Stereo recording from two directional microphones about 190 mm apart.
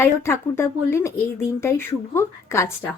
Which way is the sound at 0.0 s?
15° left (ahead or behind).